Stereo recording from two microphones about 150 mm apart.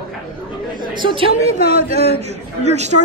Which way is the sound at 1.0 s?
40° right (ahead or behind).